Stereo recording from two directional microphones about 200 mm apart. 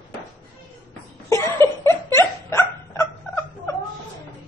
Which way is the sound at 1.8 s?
15° left (ahead or behind).